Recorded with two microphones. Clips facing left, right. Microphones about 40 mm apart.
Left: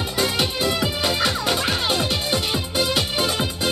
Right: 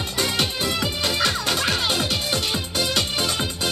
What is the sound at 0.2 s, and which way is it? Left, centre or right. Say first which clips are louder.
Music: left 2 dB; centre.